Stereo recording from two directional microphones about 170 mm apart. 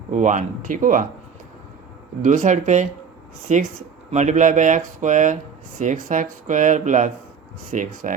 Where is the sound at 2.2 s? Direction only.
45° right (ahead or behind).